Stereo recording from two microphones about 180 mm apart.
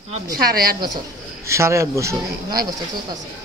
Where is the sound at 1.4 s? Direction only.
15° right (ahead or behind).